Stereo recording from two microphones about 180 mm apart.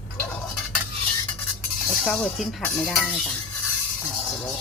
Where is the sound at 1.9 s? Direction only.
Centre (ahead or behind).